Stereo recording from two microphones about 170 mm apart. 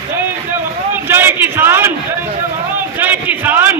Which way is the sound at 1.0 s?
15° right (ahead or behind).